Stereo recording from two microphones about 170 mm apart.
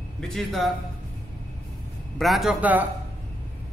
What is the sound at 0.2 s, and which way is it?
Speech, centre (ahead or behind).